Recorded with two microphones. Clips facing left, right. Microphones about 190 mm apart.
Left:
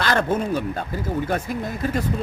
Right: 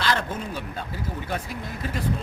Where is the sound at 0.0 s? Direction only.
50° left (ahead or behind).